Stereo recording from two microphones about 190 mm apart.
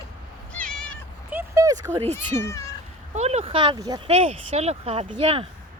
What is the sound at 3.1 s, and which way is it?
Speech, 35° right (ahead or behind).